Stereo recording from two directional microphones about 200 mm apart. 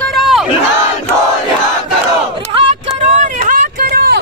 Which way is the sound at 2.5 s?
30° right (ahead or behind).